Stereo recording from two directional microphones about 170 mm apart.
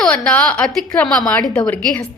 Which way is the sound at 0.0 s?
5° left (ahead or behind).